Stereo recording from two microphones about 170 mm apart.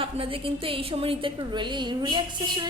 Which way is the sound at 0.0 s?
30° right (ahead or behind).